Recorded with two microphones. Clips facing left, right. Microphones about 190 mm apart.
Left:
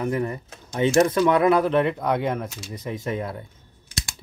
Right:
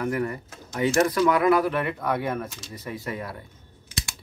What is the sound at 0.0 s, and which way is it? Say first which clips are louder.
Speech: left 1 dB; 25° left (ahead or behind).